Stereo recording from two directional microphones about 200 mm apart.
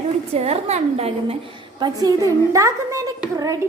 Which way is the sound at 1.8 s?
20° right (ahead or behind).